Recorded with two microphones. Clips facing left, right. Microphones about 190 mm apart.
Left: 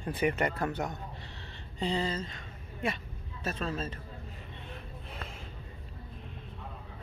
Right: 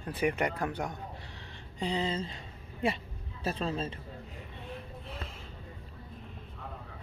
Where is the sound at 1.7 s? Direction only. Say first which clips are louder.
Left 1 dB; 15° right (ahead or behind).